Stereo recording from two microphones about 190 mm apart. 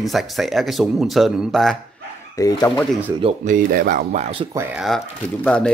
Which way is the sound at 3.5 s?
50° right (ahead or behind).